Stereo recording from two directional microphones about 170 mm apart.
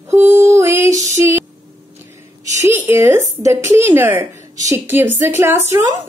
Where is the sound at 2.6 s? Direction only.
15° right (ahead or behind).